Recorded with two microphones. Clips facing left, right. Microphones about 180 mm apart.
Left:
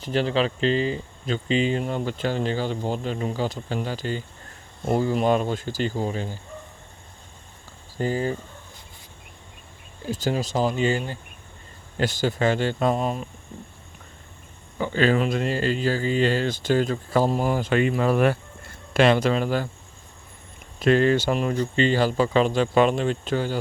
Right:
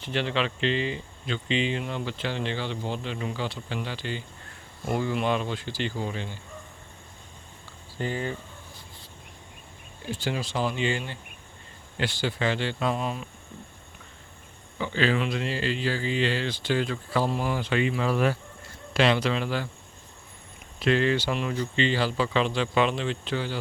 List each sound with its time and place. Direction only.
0.0 s speech: 40° left (ahead or behind)
7.9 s speech: 40° left (ahead or behind)
10.1 s speech: 40° left (ahead or behind)
14.8 s speech: 45° left (ahead or behind)
20.7 s speech: 45° left (ahead or behind)